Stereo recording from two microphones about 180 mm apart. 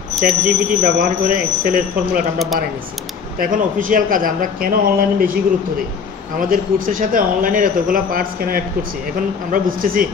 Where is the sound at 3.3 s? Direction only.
50° right (ahead or behind).